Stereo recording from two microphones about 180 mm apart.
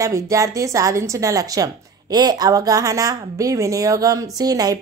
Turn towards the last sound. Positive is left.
turn(degrees=-20)  # may be behind; listen again after turning